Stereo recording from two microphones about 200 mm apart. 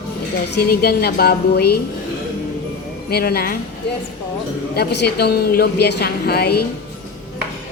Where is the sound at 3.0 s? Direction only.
50° left (ahead or behind).